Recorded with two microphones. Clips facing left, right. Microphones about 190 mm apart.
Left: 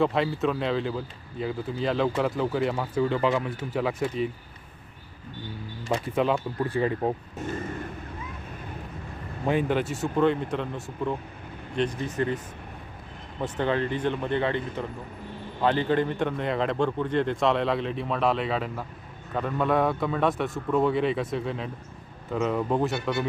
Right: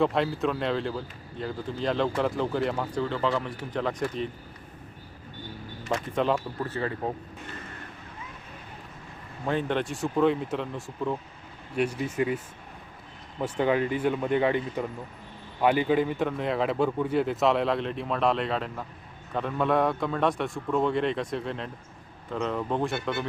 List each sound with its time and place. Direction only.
0.0 s speech: centre (ahead or behind)
5.9 s speech: 10° left (ahead or behind)
7.4 s vehicle: 45° left (ahead or behind)
9.5 s speech: 10° left (ahead or behind); by 12.4 s 10° right (ahead or behind)
13.4 s speech: 10° right (ahead or behind); by 23.0 s 5° left (ahead or behind)